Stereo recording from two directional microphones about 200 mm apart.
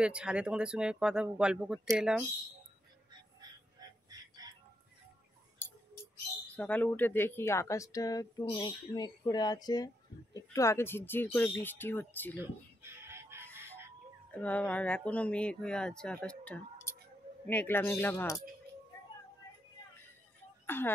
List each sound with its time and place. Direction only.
0.0 s speech: 5° right (ahead or behind)
3.8 s music: 20° right (ahead or behind)
6.5 s speech: 10° left (ahead or behind)
12.4 s fowl: 10° right (ahead or behind)
14.4 s speech: 5° left (ahead or behind)
20.6 s speech: 10° left (ahead or behind)